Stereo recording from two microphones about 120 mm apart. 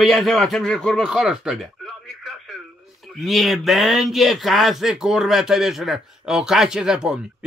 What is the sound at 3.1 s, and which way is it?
A man's voice, centre (ahead or behind).